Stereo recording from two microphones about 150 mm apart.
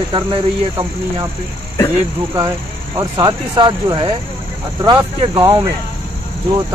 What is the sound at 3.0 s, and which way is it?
Speech, 25° right (ahead or behind).